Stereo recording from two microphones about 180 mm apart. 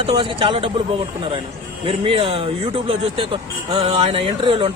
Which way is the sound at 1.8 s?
30° right (ahead or behind).